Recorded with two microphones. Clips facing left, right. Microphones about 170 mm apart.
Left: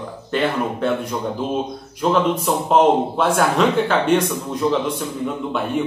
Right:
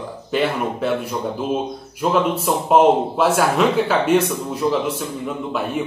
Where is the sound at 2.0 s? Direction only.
5° right (ahead or behind).